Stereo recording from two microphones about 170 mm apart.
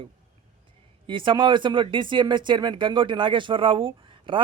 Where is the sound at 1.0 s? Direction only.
30° right (ahead or behind).